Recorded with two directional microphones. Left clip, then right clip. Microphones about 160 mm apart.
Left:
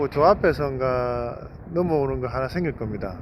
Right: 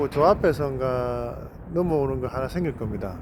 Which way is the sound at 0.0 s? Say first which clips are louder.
Left 1 dB; 10° right (ahead or behind).